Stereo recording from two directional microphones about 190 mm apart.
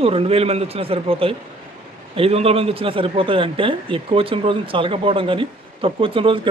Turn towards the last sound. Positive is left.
turn(degrees=-30)  # may be behind; listen again after turning